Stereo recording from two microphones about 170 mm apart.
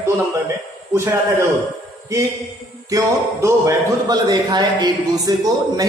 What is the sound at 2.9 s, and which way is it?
A man's voice, 20° right (ahead or behind).